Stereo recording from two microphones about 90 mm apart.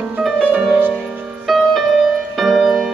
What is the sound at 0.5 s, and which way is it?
Music, 20° right (ahead or behind).